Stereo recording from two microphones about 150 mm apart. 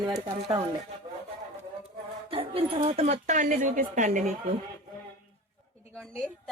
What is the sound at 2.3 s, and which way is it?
Speech, 40° right (ahead or behind).